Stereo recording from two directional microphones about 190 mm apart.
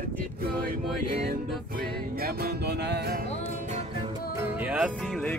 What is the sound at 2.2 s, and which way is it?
Music, 55° right (ahead or behind).